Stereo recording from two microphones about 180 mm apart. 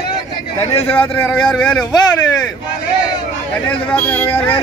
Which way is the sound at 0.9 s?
10° left (ahead or behind).